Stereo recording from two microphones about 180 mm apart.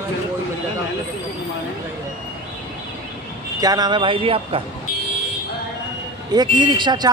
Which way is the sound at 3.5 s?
20° right (ahead or behind).